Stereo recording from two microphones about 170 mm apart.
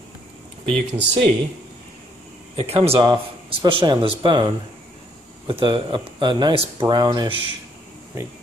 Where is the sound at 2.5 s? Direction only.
35° right (ahead or behind).